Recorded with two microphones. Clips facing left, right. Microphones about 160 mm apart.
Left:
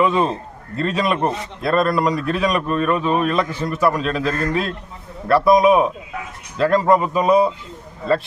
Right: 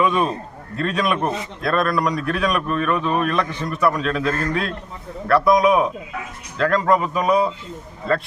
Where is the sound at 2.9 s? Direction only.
15° left (ahead or behind).